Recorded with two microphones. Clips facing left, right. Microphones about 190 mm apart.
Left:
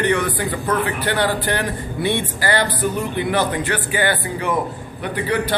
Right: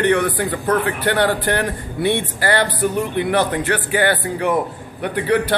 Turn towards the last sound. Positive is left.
turn(degrees=-60)  # may be behind; listen again after turning